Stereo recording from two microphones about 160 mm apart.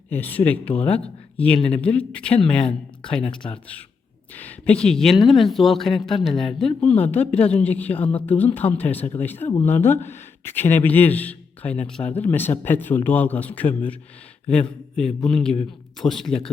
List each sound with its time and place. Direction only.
0.1 s a man's voice: 10° left (ahead or behind)
3.2 s speech: 35° left (ahead or behind)
4.4 s a man's voice: 10° left (ahead or behind)